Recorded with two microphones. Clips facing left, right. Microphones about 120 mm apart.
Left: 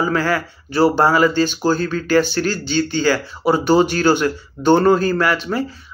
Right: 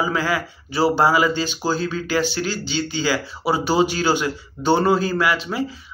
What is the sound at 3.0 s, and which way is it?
Speech, 10° right (ahead or behind).